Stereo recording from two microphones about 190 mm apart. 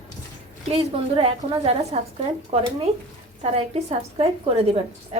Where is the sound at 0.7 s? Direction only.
30° right (ahead or behind).